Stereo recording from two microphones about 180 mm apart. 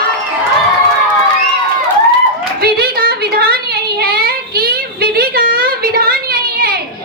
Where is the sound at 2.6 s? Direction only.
60° right (ahead or behind).